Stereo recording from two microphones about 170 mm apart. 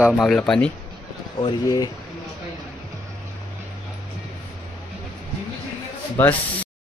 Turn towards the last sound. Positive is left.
turn(degrees=10)  # may be behind; listen again after turning